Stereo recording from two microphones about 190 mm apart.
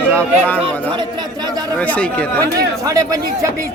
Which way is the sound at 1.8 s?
5° left (ahead or behind).